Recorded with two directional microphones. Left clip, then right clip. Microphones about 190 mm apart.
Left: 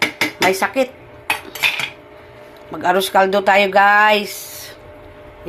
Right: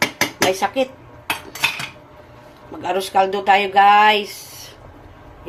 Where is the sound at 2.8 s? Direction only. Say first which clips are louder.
Left 4 dB; 20° left (ahead or behind).